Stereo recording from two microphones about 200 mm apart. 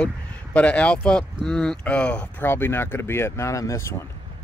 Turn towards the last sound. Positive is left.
turn(degrees=15)  # may be behind; listen again after turning